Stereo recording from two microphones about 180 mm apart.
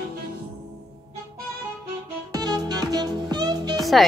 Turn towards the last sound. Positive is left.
turn(degrees=-20)  # may be behind; listen again after turning